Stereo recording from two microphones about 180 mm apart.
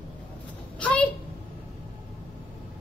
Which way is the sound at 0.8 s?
5° left (ahead or behind).